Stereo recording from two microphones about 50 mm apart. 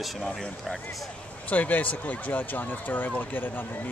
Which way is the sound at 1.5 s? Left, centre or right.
Left.